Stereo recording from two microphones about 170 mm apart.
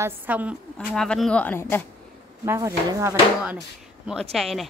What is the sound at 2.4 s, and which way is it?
Speech, 15° right (ahead or behind).